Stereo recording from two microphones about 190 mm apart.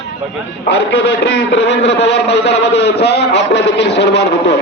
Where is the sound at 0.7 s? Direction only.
60° left (ahead or behind).